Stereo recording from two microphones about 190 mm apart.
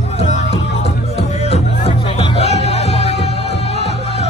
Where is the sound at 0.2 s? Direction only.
35° left (ahead or behind).